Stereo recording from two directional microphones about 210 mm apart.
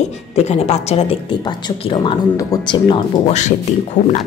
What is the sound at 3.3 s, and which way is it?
Speech, 35° left (ahead or behind).